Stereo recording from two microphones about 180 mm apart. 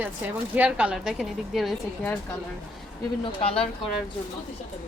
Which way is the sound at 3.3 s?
30° left (ahead or behind).